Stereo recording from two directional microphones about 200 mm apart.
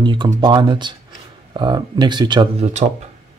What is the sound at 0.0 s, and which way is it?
Speech, 25° right (ahead or behind).